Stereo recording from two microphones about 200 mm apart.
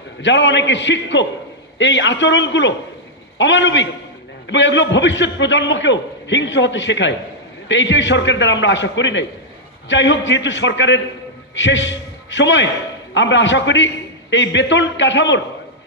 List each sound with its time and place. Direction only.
0.2 s a man's voice: 65° left (ahead or behind)